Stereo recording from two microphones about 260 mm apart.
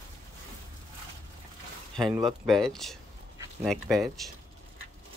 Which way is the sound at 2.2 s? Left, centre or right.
Centre.